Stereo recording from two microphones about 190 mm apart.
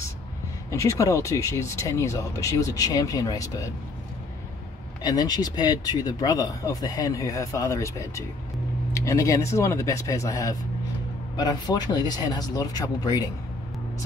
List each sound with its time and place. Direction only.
0.7 s speech: 15° left (ahead or behind)
5.0 s speech: 20° left (ahead or behind)